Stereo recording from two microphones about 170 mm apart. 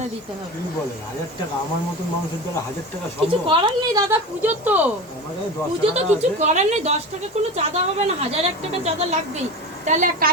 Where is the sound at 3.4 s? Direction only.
30° right (ahead or behind).